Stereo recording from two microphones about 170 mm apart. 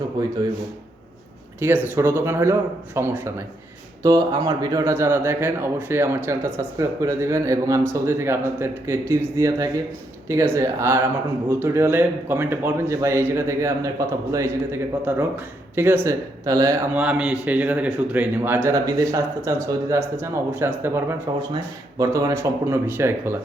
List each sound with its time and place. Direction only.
0.2 s speech: 25° right (ahead or behind)
1.6 s speech: 10° right (ahead or behind)